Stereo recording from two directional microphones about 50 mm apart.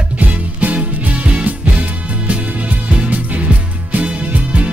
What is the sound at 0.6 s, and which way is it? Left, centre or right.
Music, right.